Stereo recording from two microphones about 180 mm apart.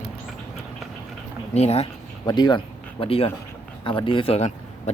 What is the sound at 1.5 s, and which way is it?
Speech, 35° left (ahead or behind).